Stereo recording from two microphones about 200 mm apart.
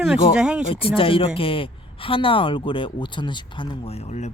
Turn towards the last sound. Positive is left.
turn(degrees=35)  # may be behind; listen again after turning